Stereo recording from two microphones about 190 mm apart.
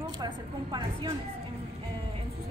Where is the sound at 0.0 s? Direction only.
25° right (ahead or behind).